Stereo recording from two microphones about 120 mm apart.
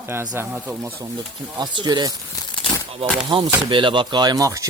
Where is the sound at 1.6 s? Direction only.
35° right (ahead or behind).